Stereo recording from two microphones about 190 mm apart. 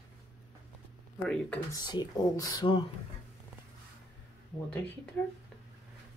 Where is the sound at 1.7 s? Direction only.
20° left (ahead or behind).